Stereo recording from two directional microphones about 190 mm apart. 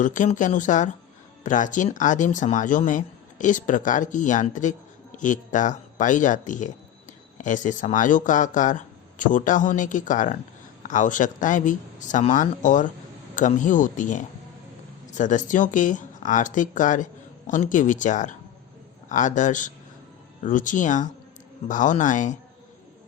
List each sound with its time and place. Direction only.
0.0 s speech: 40° left (ahead or behind)